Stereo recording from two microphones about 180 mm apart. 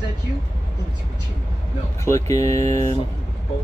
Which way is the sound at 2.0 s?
15° left (ahead or behind).